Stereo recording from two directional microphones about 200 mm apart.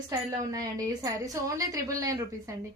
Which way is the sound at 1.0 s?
15° right (ahead or behind).